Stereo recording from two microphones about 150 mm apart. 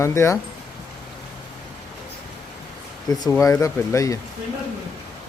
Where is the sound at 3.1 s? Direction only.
25° left (ahead or behind).